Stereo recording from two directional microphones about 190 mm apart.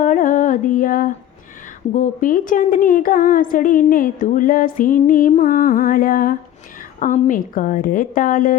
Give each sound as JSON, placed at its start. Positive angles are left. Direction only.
{"t": 0.0, "sound": "music", "side_deg": 45}
{"t": 2.0, "sound": "speech", "side_deg": 45}